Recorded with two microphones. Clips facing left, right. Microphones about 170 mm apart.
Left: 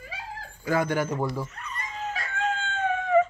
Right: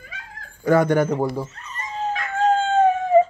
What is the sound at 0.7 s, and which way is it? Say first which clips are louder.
Speech: right 8 dB; 55° right (ahead or behind).